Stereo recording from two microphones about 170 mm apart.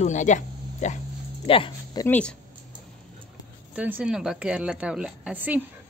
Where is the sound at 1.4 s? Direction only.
35° left (ahead or behind).